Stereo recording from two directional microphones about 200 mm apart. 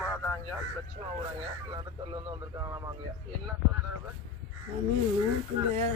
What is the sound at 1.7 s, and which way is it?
Speech, 20° right (ahead or behind).